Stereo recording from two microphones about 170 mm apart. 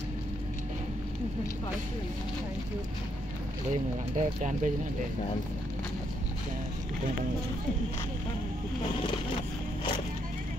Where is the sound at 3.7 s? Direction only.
45° right (ahead or behind).